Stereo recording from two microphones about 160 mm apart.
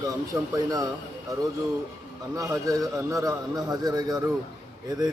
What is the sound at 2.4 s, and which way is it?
A man's voice, 20° right (ahead or behind).